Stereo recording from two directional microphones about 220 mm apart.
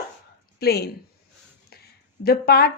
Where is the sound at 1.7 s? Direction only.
45° left (ahead or behind).